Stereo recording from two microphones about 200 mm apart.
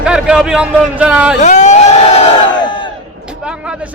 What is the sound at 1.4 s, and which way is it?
Crowd, 35° left (ahead or behind).